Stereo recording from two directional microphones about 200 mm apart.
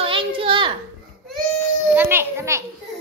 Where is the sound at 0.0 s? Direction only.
25° right (ahead or behind).